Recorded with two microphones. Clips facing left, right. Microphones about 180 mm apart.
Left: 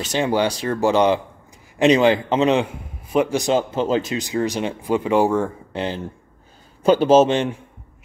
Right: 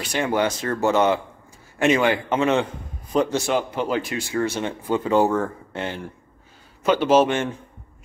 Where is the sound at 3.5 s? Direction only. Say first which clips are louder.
Left 4 dB; 25° left (ahead or behind).